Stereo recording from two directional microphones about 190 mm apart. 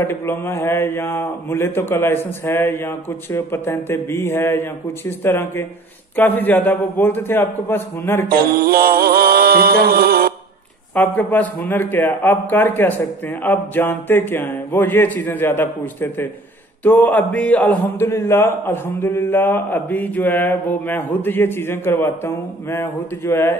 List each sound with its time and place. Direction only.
0.0 s a man's voice: 10° left (ahead or behind)
8.3 s music: 50° right (ahead or behind)
11.0 s a man's voice: 10° left (ahead or behind)